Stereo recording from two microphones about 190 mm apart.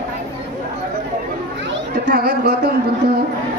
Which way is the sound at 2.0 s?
60° right (ahead or behind).